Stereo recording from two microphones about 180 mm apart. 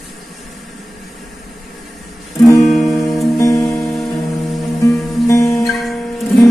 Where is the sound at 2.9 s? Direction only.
15° left (ahead or behind).